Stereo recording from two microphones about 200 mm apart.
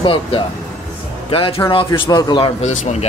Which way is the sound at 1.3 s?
25° left (ahead or behind).